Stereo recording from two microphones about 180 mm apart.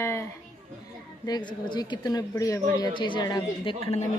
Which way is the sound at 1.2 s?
25° left (ahead or behind).